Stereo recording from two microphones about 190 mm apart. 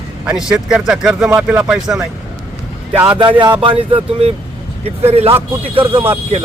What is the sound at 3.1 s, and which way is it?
Speech, 25° right (ahead or behind).